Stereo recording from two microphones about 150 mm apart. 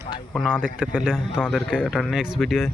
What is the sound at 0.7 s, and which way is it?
Speech, 5° right (ahead or behind).